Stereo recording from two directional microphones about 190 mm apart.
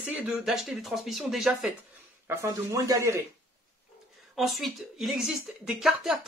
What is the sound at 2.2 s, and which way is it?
Speech, 15° right (ahead or behind).